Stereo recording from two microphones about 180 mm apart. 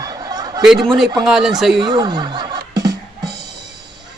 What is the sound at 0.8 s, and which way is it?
Speech, centre (ahead or behind).